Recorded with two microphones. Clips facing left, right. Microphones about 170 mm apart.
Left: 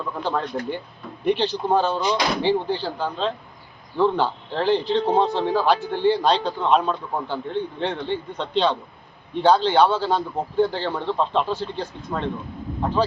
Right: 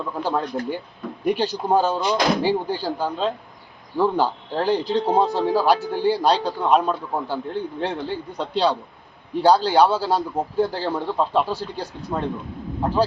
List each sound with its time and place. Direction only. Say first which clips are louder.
0.0 s a man's voice: right 1 dB; 10° right (ahead or behind)
11.5 s speech: left 1 dB; 40° right (ahead or behind)
12.8 s speech: right 1 dB; 10° right (ahead or behind)